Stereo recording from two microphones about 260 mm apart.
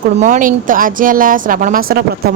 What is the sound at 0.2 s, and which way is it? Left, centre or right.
Speech, right.